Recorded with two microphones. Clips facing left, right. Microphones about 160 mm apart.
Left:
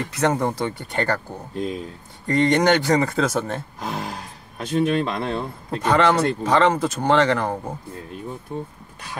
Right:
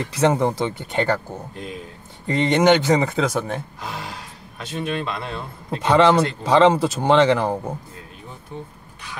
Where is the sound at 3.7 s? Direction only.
45° left (ahead or behind).